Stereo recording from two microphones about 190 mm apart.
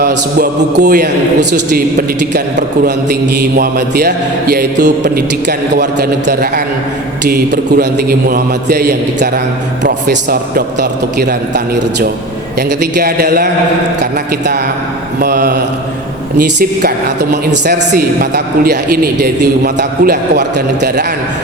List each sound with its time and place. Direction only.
0.0 s a man's voice: 55° right (ahead or behind)
17.3 s a man's voice: 55° right (ahead or behind)